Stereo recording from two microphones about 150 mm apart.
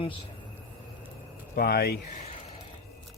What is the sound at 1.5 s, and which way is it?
Speech, 90° left.